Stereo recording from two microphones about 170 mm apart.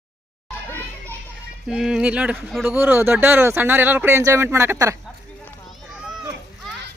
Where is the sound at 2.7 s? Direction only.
10° right (ahead or behind).